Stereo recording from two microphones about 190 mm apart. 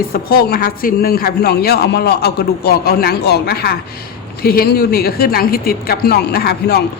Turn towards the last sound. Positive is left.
turn(degrees=55)  # may be behind; listen again after turning